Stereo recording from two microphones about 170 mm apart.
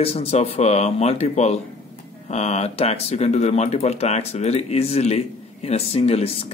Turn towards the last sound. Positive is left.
turn(degrees=35)  # may be behind; listen again after turning